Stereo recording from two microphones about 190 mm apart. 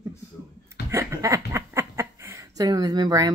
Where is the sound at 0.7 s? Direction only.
15° right (ahead or behind).